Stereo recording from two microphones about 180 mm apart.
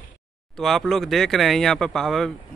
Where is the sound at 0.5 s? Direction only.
Centre (ahead or behind).